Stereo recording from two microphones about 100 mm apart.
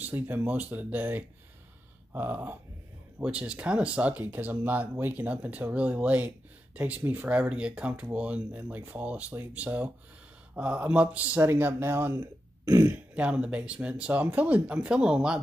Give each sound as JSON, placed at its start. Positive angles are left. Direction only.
{"t": 0.0, "sound": "speech", "side_deg": -20}
{"t": 2.1, "sound": "a sound", "side_deg": -20}
{"t": 3.2, "sound": "speech", "side_deg": -10}